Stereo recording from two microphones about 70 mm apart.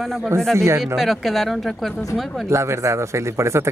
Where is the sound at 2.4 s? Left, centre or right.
Right.